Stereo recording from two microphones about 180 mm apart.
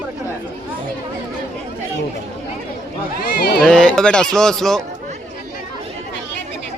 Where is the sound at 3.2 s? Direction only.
60° left (ahead or behind).